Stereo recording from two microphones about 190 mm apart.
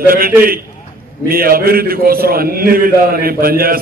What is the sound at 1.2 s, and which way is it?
A man's voice, 50° right (ahead or behind).